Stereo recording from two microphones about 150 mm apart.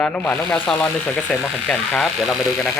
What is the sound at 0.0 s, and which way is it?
Speech, 10° left (ahead or behind).